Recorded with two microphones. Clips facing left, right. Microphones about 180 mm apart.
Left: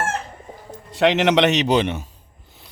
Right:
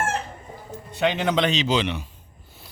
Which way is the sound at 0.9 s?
90° left.